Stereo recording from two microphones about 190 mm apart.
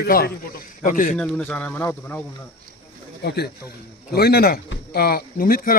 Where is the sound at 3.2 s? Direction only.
55° left (ahead or behind).